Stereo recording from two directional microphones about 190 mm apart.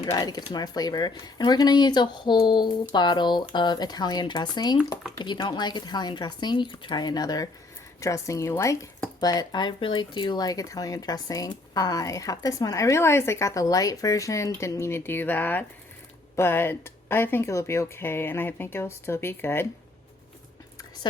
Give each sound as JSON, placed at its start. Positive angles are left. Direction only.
{"t": 0.0, "sound": "speech", "side_deg": 20}